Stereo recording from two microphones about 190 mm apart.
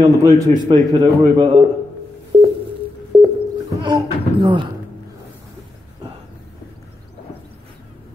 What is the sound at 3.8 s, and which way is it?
Speech, 25° right (ahead or behind).